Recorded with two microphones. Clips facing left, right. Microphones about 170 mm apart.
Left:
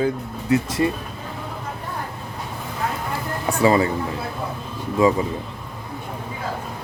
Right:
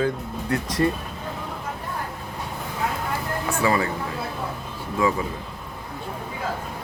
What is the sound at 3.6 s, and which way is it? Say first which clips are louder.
Speech: left 6 dB; 25° left (ahead or behind).